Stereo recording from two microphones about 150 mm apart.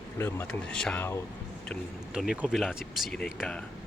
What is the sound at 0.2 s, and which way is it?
Speech, 15° left (ahead or behind).